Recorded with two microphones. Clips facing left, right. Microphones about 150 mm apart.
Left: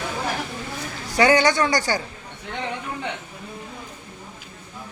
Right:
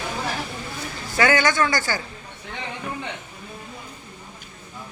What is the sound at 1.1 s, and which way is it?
Speech, 25° left (ahead or behind).